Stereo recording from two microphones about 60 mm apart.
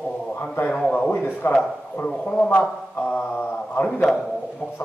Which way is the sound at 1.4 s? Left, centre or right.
Left.